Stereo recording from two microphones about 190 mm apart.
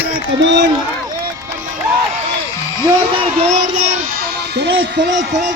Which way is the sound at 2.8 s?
20° right (ahead or behind).